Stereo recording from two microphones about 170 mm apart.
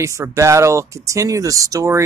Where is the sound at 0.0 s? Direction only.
20° right (ahead or behind).